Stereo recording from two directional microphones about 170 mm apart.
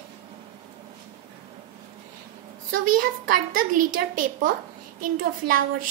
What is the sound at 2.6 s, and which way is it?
A child's voice, 55° right (ahead or behind).